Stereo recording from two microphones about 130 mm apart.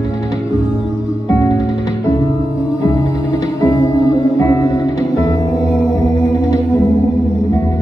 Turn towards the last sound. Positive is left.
turn(degrees=25)  # may be behind; listen again after turning